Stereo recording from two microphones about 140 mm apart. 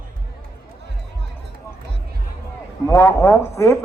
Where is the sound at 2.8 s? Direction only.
20° left (ahead or behind).